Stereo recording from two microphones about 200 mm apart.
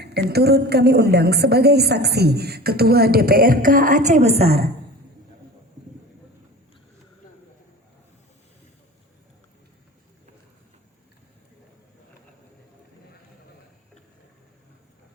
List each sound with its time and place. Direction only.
0.0 s a woman's voice: 55° right (ahead or behind); by 4.6 s 30° right (ahead or behind)